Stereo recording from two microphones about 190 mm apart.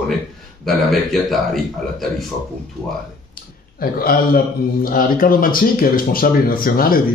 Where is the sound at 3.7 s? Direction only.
50° left (ahead or behind).